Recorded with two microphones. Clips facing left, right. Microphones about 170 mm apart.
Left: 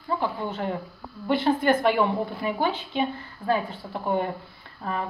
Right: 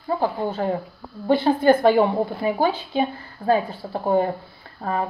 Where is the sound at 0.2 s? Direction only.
35° right (ahead or behind).